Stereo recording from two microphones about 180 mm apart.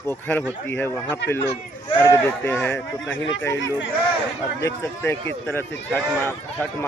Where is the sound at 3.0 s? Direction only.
90° left.